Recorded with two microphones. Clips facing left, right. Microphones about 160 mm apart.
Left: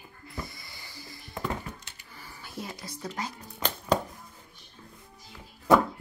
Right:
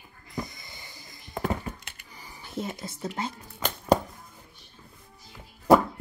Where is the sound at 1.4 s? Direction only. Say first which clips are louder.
Right 4 dB; 60° right (ahead or behind).